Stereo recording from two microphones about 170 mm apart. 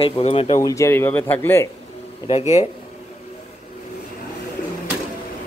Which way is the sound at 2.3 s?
40° left (ahead or behind).